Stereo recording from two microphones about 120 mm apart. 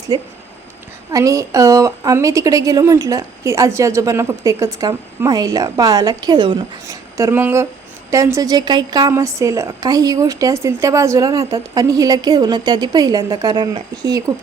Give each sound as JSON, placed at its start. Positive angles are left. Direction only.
{"t": 0.1, "sound": "a woman's voice", "side_deg": -35}
{"t": 6.8, "sound": "a woman's voice", "side_deg": -25}